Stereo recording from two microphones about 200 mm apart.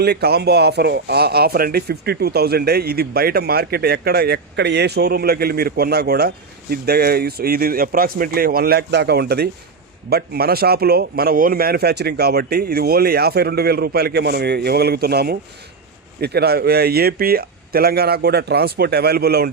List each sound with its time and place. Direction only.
0.0 s speech: 55° right (ahead or behind)